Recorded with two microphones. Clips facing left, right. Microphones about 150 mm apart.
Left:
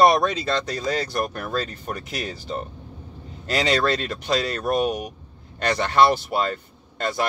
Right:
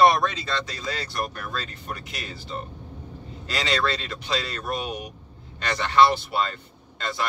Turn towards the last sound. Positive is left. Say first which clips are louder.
# left 5 dB
turn(degrees=50)  # may be behind; listen again after turning